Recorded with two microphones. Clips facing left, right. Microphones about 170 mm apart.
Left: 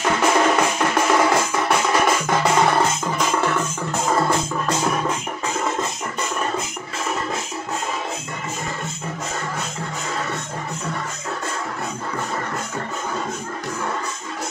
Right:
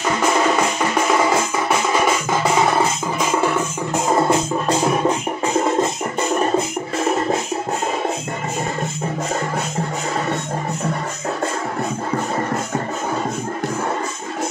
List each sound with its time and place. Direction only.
0.2 s music: centre (ahead or behind)
4.1 s music: 20° right (ahead or behind)